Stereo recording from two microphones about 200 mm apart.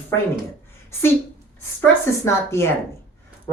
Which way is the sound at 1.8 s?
15° left (ahead or behind).